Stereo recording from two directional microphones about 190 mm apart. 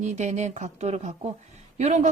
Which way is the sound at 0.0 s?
40° right (ahead or behind).